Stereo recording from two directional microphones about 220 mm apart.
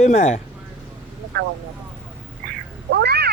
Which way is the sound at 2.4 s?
45° right (ahead or behind).